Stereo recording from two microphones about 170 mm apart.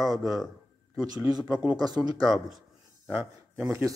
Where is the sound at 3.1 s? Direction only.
10° right (ahead or behind).